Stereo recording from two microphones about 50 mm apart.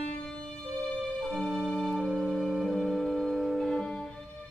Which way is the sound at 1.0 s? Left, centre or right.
Centre.